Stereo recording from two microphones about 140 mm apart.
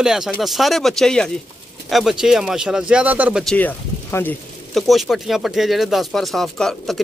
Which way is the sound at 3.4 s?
10° left (ahead or behind).